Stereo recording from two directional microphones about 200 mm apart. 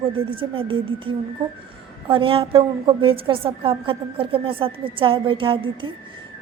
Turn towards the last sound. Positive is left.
turn(degrees=-25)  # may be behind; listen again after turning